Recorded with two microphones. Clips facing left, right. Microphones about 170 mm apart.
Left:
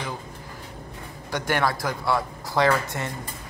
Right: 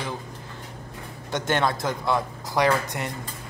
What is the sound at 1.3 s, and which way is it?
Speech, 20° right (ahead or behind).